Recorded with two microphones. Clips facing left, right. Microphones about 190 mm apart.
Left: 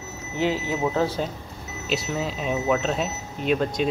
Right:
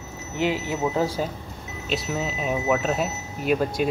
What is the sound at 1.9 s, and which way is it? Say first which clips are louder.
Speech: even; centre (ahead or behind).